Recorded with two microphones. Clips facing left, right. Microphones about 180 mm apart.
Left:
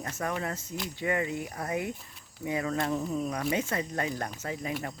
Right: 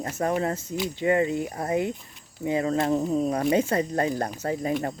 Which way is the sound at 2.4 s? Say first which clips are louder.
Right 6 dB; 30° right (ahead or behind).